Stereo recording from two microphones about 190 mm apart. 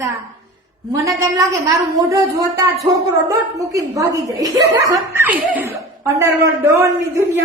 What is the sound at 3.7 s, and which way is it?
A woman's voice, 15° right (ahead or behind).